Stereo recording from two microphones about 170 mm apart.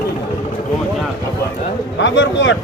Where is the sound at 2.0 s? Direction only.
90° left.